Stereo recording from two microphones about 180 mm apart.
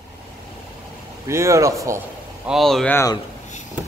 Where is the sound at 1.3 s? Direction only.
15° right (ahead or behind).